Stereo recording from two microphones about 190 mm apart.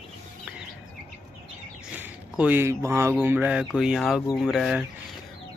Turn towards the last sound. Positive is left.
turn(degrees=0)  # may be behind; listen again after turning